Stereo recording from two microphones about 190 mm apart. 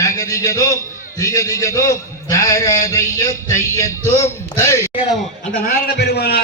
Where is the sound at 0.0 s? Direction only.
15° left (ahead or behind).